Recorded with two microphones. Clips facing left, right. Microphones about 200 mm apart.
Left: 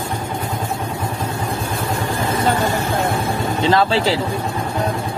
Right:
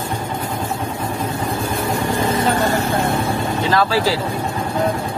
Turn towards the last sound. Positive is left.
turn(degrees=25)  # may be behind; listen again after turning